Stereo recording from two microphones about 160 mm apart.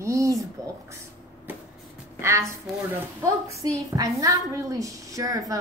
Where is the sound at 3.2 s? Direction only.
20° right (ahead or behind).